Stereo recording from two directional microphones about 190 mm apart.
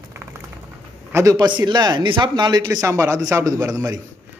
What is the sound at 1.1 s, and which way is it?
Speech, 20° right (ahead or behind).